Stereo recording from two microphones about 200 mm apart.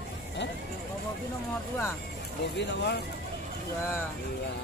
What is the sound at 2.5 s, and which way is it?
Speech, 60° left (ahead or behind).